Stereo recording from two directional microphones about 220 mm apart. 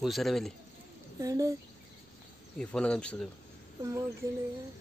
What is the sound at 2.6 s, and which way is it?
Speech, 5° left (ahead or behind).